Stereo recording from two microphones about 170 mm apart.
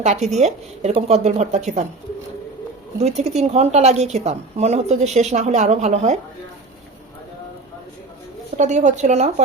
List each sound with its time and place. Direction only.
0.0 s a woman's voice: 40° right (ahead or behind)
3.0 s a woman's voice: 40° right (ahead or behind)
8.5 s a woman's voice: 45° right (ahead or behind)